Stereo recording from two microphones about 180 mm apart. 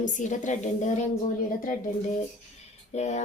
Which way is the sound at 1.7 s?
50° left (ahead or behind).